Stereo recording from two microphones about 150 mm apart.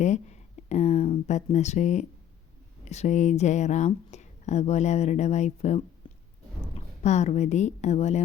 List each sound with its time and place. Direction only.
0.0 s a sound: 50° left (ahead or behind)
1.5 s speech: 50° left (ahead or behind)
6.0 s chewing: 35° left (ahead or behind)
7.0 s speech: 50° left (ahead or behind)